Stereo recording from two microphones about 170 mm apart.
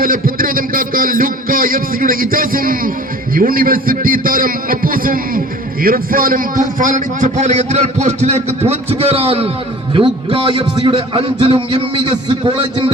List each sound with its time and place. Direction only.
0.0 s a man's voice: 55° right (ahead or behind); by 12.9 s 25° right (ahead or behind)